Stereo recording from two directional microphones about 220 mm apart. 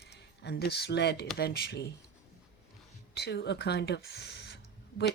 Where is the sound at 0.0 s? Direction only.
50° left (ahead or behind).